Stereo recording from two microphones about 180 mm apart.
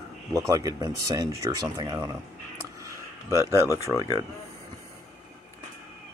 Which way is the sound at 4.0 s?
20° left (ahead or behind).